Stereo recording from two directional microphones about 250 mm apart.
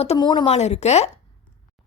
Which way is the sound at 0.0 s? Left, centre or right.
Left.